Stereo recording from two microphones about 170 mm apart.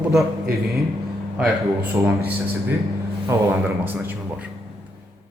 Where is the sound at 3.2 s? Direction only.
10° right (ahead or behind).